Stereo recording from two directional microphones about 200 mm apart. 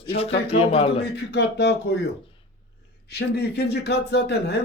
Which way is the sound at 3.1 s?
55° left (ahead or behind).